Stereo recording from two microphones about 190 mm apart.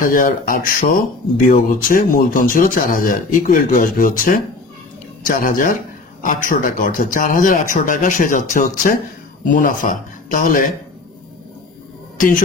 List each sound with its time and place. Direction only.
0.0 s speech: 45° left (ahead or behind)